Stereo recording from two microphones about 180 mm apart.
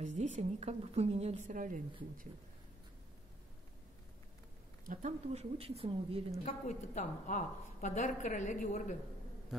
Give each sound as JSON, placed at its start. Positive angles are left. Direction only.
{"t": 0.0, "sound": "a woman's voice", "side_deg": -40}
{"t": 4.8, "sound": "a woman's voice", "side_deg": -40}
{"t": 6.4, "sound": "a woman's voice", "side_deg": 40}